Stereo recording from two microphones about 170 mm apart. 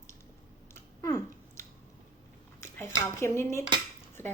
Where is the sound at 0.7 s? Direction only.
15° left (ahead or behind).